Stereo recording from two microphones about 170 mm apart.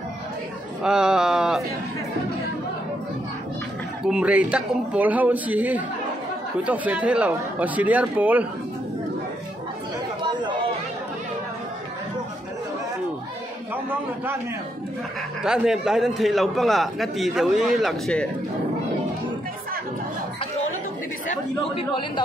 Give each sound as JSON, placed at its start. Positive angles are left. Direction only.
{"t": 0.8, "sound": "a man's voice", "side_deg": -5}
{"t": 4.0, "sound": "speech", "side_deg": -5}
{"t": 10.2, "sound": "chatter", "side_deg": -25}
{"t": 13.8, "sound": "speech", "side_deg": -10}
{"t": 15.4, "sound": "a man's voice", "side_deg": -5}